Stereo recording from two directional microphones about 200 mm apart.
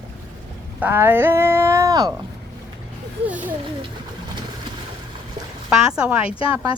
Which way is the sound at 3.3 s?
10° right (ahead or behind).